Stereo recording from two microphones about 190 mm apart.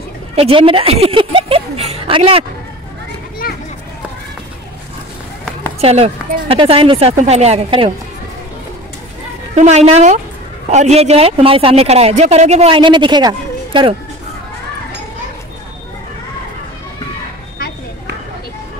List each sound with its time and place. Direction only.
0.4 s a sound: 30° right (ahead or behind)
5.8 s speech: 35° right (ahead or behind)
9.6 s speech: 35° right (ahead or behind)